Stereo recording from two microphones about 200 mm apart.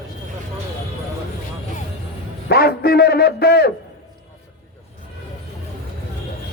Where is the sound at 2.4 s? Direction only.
50° left (ahead or behind).